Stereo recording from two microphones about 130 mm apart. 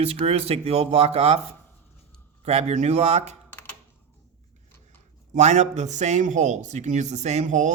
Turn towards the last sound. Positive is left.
turn(degrees=-70)  # may be behind; listen again after turning